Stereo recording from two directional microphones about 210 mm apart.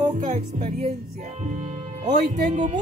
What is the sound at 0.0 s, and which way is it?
Music, 40° right (ahead or behind).